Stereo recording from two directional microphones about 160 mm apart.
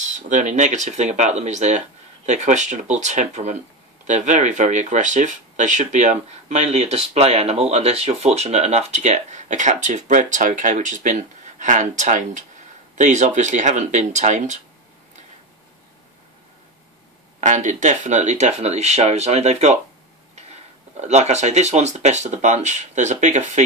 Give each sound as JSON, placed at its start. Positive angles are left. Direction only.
{"t": 0.0, "sound": "speech", "side_deg": -50}
{"t": 17.4, "sound": "speech", "side_deg": -50}
{"t": 21.0, "sound": "speech", "side_deg": -45}